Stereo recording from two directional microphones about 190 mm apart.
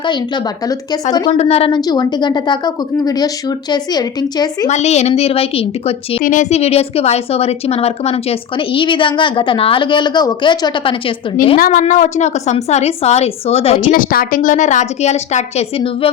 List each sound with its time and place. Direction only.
1.3 s a woman's voice: 35° left (ahead or behind)
4.7 s a woman's voice: 35° left (ahead or behind)
6.2 s a woman's voice: 40° left (ahead or behind); by 10.9 s 25° left (ahead or behind)
11.5 s a woman's voice: 45° left (ahead or behind); by 13.9 s 30° left (ahead or behind)
13.9 s a woman's voice: 50° left (ahead or behind); by 16.0 s 30° left (ahead or behind)